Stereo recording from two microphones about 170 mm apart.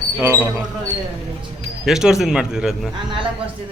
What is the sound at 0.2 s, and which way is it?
Speech, 15° right (ahead or behind).